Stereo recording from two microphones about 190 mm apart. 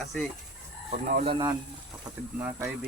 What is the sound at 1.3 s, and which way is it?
Speech, 25° right (ahead or behind).